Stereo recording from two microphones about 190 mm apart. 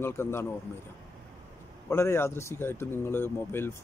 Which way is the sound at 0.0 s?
10° left (ahead or behind).